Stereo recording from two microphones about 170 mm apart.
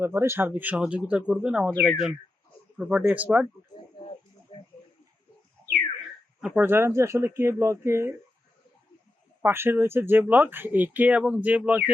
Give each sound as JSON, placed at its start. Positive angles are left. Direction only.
{"t": 0.0, "sound": "speech", "side_deg": -15}
{"t": 6.6, "sound": "speech", "side_deg": -15}
{"t": 9.4, "sound": "speech", "side_deg": -15}